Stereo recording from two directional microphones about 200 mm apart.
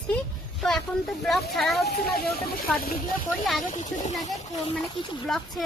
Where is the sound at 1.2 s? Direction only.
Centre (ahead or behind).